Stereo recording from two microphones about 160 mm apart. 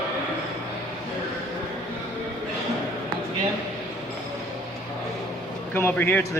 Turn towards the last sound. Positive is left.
turn(degrees=10)  # may be behind; listen again after turning